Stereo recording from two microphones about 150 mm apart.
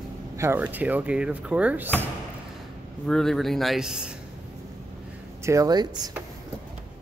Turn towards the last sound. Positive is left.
turn(degrees=-25)  # may be behind; listen again after turning